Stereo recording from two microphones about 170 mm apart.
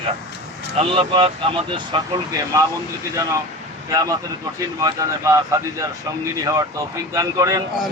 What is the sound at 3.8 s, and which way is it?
Speech, 20° right (ahead or behind).